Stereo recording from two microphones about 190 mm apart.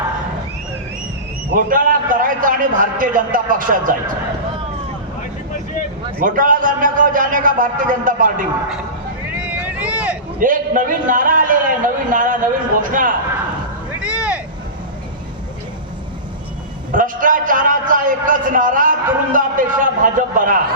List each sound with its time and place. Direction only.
1.5 s a man's voice: 45° right (ahead or behind)
6.1 s a man's voice: 45° right (ahead or behind)
9.3 s vehicle: 5° right (ahead or behind)
10.4 s a man's voice: 45° right (ahead or behind)
14.0 s a sound: 5° right (ahead or behind)
16.9 s a man's voice: 45° right (ahead or behind)